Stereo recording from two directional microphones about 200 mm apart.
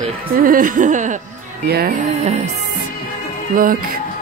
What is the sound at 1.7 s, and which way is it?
Speech, 50° right (ahead or behind).